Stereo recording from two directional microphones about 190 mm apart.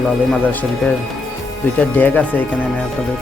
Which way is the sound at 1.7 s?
10° left (ahead or behind).